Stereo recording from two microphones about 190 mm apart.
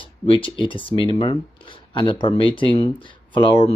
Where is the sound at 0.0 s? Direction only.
25° left (ahead or behind).